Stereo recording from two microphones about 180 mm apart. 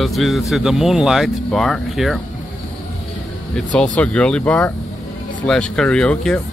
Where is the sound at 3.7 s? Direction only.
5° left (ahead or behind).